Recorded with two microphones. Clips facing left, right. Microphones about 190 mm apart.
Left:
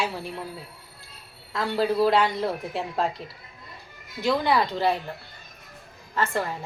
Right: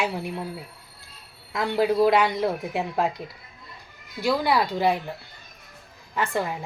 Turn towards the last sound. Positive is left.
turn(degrees=-15)  # may be behind; listen again after turning